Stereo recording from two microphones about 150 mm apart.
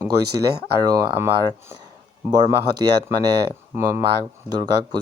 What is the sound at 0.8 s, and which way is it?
Speech, 25° right (ahead or behind).